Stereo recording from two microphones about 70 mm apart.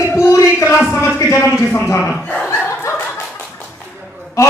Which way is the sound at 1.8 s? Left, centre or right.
Left.